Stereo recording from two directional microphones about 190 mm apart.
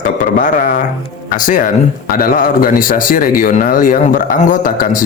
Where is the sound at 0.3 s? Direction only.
50° left (ahead or behind).